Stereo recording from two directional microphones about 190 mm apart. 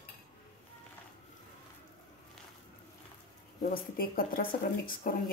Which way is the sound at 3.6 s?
50° left (ahead or behind).